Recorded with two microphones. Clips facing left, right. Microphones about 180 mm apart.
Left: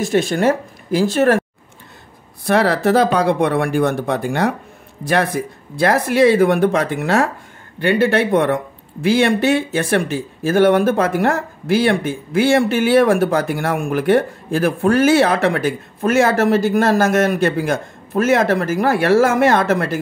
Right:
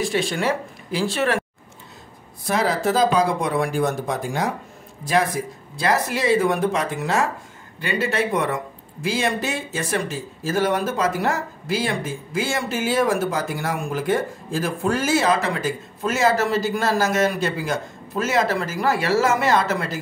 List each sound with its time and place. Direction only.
0.0 s speech: 45° left (ahead or behind)
2.4 s speech: 65° left (ahead or behind)